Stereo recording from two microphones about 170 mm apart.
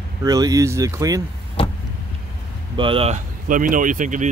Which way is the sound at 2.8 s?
30° right (ahead or behind).